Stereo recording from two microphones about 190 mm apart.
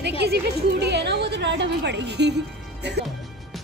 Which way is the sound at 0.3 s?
60° right (ahead or behind).